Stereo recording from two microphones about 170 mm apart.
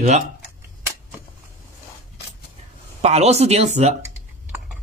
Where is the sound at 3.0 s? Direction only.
40° right (ahead or behind).